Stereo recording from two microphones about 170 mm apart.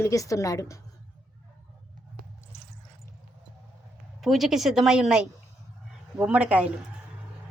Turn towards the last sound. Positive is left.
turn(degrees=-10)  # may be behind; listen again after turning